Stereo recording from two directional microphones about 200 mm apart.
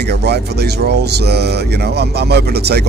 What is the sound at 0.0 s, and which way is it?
A man's voice, 55° right (ahead or behind).